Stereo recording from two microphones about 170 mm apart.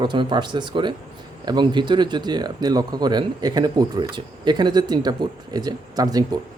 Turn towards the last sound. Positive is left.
turn(degrees=-20)  # may be behind; listen again after turning